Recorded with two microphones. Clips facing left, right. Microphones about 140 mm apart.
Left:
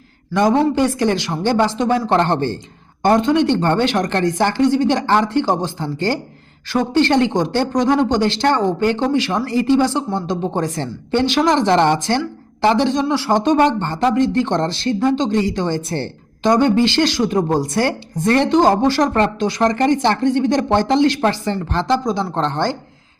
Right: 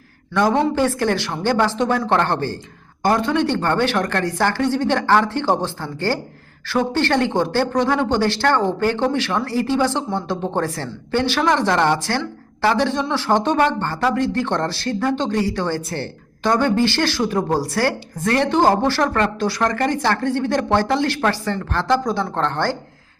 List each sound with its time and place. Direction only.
0.8 s a woman's voice: 15° left (ahead or behind)